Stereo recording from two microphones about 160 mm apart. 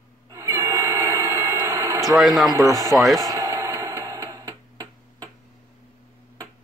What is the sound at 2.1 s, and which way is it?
Speech, centre (ahead or behind).